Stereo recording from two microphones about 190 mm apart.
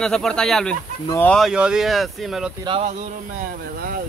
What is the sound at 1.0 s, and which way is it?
Speech, 15° left (ahead or behind).